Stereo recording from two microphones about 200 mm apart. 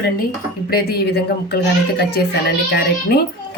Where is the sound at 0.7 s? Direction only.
50° left (ahead or behind).